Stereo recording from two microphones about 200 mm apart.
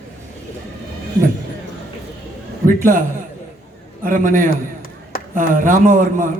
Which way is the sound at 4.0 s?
40° right (ahead or behind).